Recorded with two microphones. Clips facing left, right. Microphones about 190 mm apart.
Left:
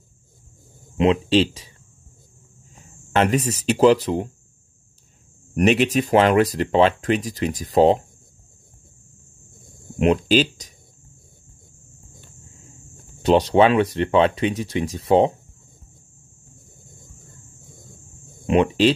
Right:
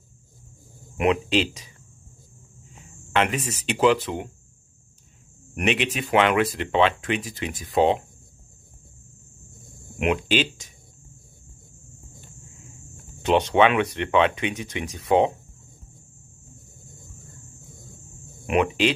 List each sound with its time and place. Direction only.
0.9 s speech: 30° left (ahead or behind)
2.7 s speech: 40° left (ahead or behind)
5.5 s speech: 35° left (ahead or behind)
9.9 s speech: 35° left (ahead or behind)
12.9 s speech: 35° left (ahead or behind)
18.4 s speech: 30° left (ahead or behind)